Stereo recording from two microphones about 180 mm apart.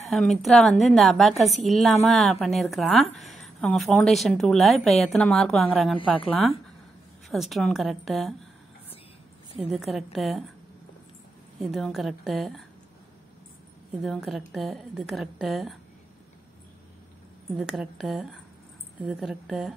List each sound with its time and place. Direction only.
0.1 s a woman's voice: centre (ahead or behind)
5.9 s a woman's voice: 30° left (ahead or behind)
7.2 s a woman's voice: centre (ahead or behind)
9.6 s a woman's voice: centre (ahead or behind)
11.6 s a woman's voice: centre (ahead or behind)
14.0 s a woman's voice: centre (ahead or behind)
17.6 s a woman's voice: centre (ahead or behind)